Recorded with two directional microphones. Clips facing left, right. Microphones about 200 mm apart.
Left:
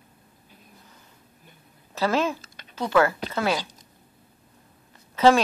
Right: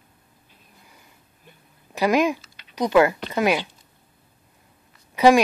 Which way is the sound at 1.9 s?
15° right (ahead or behind).